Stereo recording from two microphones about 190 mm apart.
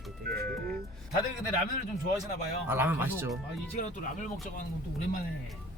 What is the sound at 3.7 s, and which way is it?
Speech, 40° left (ahead or behind).